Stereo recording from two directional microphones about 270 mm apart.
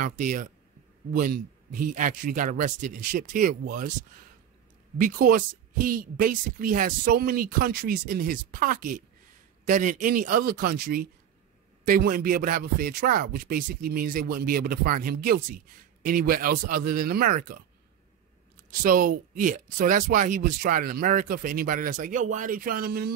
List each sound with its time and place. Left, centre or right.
0.0 s speech: right
4.9 s speech: right
18.7 s speech: right